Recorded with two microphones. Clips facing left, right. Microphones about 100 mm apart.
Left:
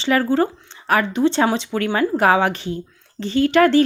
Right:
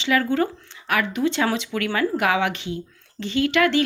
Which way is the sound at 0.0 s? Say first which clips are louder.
Left 3 dB; 35° left (ahead or behind).